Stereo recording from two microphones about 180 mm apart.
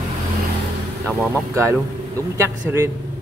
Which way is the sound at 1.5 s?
15° right (ahead or behind).